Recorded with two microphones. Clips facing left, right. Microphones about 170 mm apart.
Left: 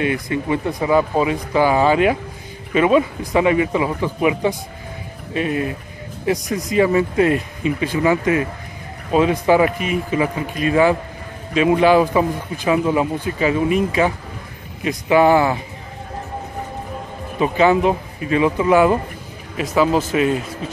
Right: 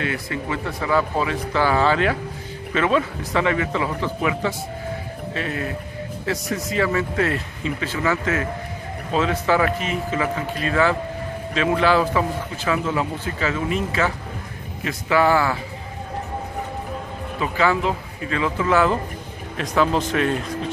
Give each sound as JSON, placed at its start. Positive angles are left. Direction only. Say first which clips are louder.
{"t": 0.0, "sound": "a man's voice", "louder": "left 6 dB", "side_deg": 20}
{"t": 17.4, "sound": "a man's voice", "louder": "left 6 dB", "side_deg": 20}